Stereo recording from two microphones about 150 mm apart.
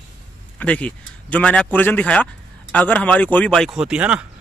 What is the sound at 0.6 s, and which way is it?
Speech, 10° left (ahead or behind).